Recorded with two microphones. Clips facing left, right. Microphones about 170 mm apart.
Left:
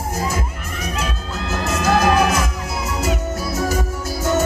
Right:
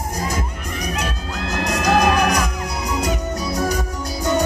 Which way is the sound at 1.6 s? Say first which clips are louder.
Even; 5° left (ahead or behind).